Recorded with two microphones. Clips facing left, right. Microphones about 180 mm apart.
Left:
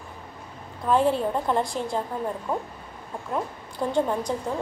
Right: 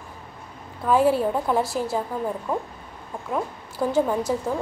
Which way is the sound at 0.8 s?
5° right (ahead or behind).